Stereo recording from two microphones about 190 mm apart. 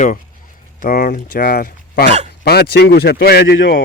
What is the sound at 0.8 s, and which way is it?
Speech, 50° left (ahead or behind).